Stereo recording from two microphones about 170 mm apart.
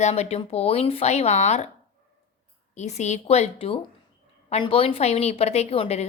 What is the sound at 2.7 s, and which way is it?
A woman's voice, 40° left (ahead or behind).